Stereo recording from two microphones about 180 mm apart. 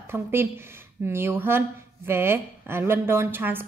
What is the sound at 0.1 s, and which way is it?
Speech, 15° right (ahead or behind).